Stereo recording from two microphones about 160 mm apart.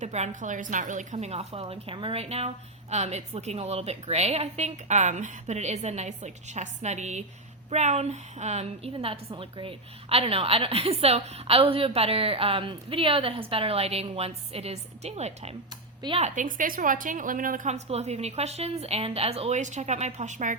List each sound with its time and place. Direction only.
0.0 s a woman's voice: 45° right (ahead or behind)
16.0 s speech: 30° right (ahead or behind)
16.2 s a woman's voice: 55° right (ahead or behind)